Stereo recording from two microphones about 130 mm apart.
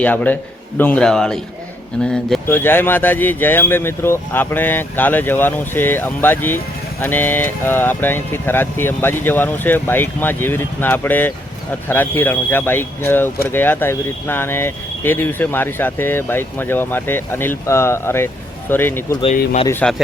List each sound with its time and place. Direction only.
0.0 s a man's voice: 10° left (ahead or behind)
2.5 s speech: 15° left (ahead or behind)